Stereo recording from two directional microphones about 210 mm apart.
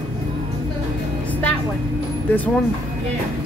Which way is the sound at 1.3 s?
5° left (ahead or behind).